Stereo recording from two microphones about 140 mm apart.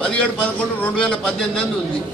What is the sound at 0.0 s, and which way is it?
A man's voice, 10° left (ahead or behind).